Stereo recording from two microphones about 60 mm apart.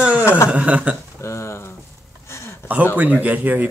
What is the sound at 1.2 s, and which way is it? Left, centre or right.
Speech, left.